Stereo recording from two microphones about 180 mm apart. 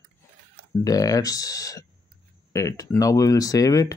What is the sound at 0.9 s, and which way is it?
Speech, 20° left (ahead or behind).